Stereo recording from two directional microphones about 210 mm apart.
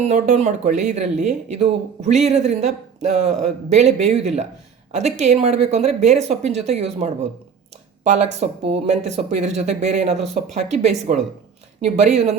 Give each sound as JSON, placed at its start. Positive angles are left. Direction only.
{"t": 0.0, "sound": "speech", "side_deg": -35}